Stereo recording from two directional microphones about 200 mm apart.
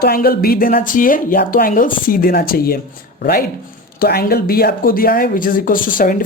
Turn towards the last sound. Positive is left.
turn(degrees=45)  # may be behind; listen again after turning